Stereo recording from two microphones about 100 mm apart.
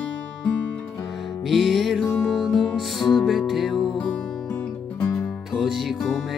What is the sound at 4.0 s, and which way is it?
Music, 15° left (ahead or behind).